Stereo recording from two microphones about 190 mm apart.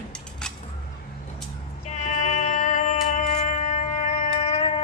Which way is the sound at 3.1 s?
40° left (ahead or behind).